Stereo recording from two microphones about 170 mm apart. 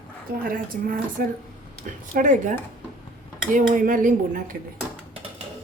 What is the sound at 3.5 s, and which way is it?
Speech, 50° right (ahead or behind).